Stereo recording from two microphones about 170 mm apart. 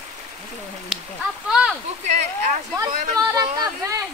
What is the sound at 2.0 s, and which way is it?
Speech, 45° right (ahead or behind).